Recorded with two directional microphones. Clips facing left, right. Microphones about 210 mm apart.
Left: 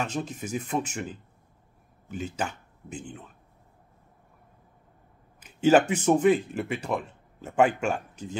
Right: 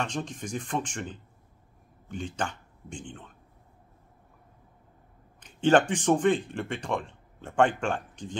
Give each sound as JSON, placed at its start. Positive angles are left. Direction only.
{"t": 0.0, "sound": "speech", "side_deg": 5}
{"t": 5.4, "sound": "speech", "side_deg": 5}